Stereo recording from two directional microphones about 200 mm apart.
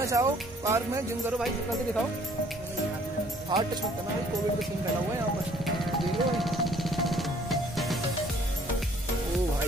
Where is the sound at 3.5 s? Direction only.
20° right (ahead or behind).